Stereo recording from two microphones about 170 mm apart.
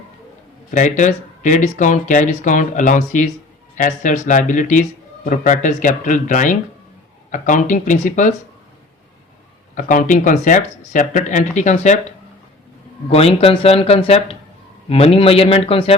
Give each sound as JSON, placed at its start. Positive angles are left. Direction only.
{"t": 0.7, "sound": "speech", "side_deg": 45}
{"t": 9.7, "sound": "speech", "side_deg": 50}
{"t": 13.1, "sound": "speech", "side_deg": 35}